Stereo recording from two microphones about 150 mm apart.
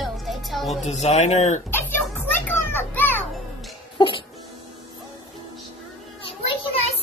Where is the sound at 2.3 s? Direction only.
15° left (ahead or behind).